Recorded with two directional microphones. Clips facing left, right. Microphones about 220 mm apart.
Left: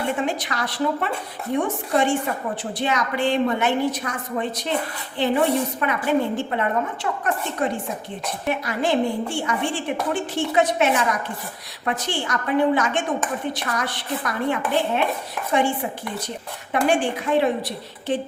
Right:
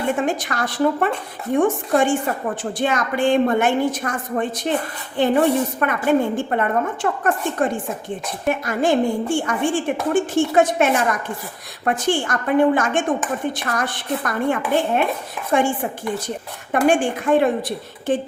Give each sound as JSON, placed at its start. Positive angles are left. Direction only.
{"t": 0.2, "sound": "a woman's voice", "side_deg": -50}